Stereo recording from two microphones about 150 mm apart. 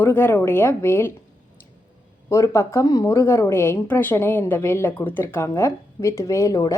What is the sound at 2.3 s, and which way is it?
A woman's voice, 20° left (ahead or behind).